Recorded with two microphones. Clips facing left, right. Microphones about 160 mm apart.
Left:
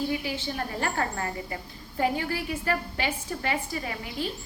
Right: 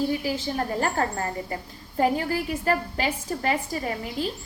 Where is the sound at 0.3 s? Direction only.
40° right (ahead or behind).